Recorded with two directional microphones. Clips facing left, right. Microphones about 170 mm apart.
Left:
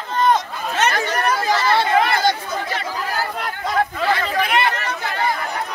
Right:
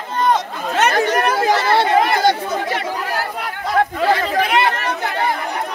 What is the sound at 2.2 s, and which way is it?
Chatter, 65° right (ahead or behind).